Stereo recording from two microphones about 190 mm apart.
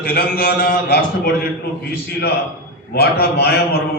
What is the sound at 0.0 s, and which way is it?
A man's voice, 55° left (ahead or behind).